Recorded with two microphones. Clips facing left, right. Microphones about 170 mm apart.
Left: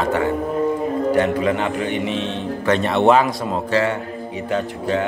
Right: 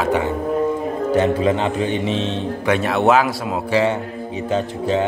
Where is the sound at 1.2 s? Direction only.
25° right (ahead or behind).